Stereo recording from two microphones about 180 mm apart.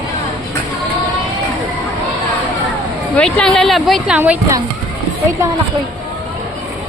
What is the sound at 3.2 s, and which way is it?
Speech, 5° left (ahead or behind).